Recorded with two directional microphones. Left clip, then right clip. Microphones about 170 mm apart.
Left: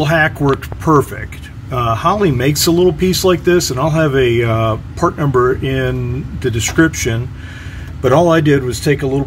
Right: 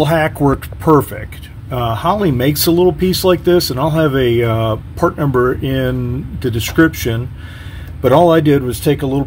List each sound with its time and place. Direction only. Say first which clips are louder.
0.0 s speech: even; 35° right (ahead or behind)
1.7 s speech: left 1 dB; 20° right (ahead or behind)